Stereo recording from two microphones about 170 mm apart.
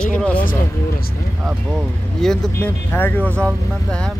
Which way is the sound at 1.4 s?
Centre (ahead or behind).